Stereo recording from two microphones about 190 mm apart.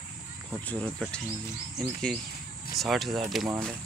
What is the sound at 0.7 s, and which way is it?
Speech, 5° left (ahead or behind).